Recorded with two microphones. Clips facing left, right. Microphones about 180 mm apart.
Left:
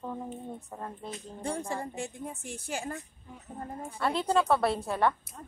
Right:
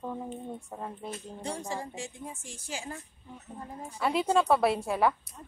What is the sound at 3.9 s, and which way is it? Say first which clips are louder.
A woman's voice: right 1 dB; 5° right (ahead or behind).